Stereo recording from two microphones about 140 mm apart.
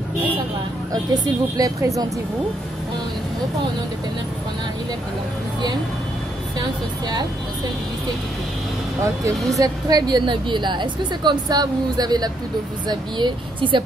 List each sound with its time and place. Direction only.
1.1 s a woman's voice: 25° right (ahead or behind)
9.6 s a woman's voice: 30° right (ahead or behind)